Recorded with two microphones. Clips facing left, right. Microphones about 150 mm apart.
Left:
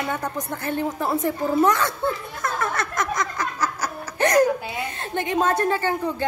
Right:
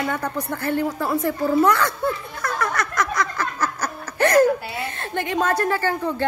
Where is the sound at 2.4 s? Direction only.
25° left (ahead or behind).